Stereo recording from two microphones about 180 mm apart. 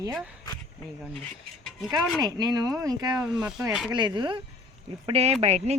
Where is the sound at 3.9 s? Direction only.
25° right (ahead or behind).